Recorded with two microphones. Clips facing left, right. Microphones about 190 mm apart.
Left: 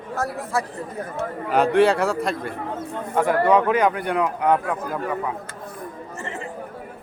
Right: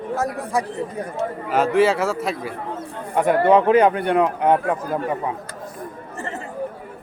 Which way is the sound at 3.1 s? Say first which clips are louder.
Right 3 dB; 20° right (ahead or behind).